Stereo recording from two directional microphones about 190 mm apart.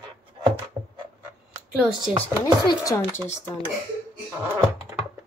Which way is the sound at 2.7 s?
15° left (ahead or behind).